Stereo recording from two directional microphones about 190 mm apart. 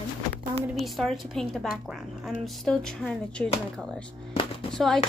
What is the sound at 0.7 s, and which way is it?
A woman's voice, centre (ahead or behind).